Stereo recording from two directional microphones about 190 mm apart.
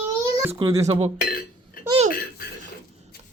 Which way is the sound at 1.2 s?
50° left (ahead or behind).